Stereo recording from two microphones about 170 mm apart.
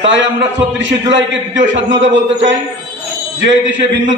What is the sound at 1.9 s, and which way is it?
Speech, 90° right.